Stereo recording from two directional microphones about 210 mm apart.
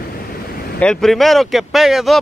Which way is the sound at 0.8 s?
5° left (ahead or behind).